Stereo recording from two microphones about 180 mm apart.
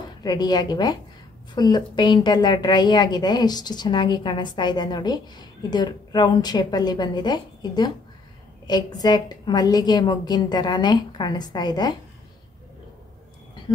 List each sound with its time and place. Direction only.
0.2 s a woman's voice: 20° left (ahead or behind)